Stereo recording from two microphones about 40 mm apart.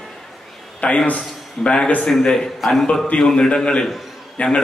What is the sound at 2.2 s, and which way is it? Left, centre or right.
Speech, centre.